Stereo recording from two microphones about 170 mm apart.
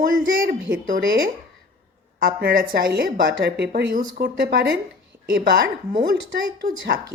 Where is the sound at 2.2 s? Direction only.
60° right (ahead or behind); by 3.8 s 75° right (ahead or behind).